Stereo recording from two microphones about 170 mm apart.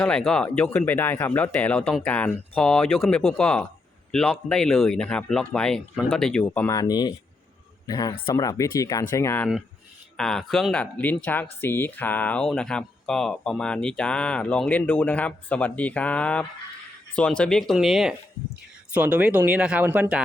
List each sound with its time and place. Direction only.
0.0 s speech: 5° left (ahead or behind)
6.7 s speech: 25° left (ahead or behind)
10.2 s speech: 5° left (ahead or behind)